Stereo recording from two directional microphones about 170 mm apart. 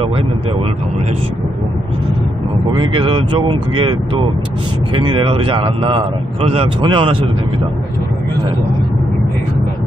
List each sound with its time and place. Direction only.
2.7 s a man's voice: 30° right (ahead or behind)